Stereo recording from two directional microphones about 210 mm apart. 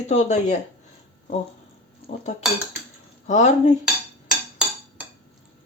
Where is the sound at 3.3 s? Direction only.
35° left (ahead or behind).